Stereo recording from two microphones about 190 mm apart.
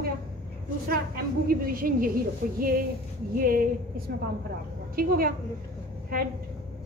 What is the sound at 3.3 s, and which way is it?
A woman's voice, 50° right (ahead or behind).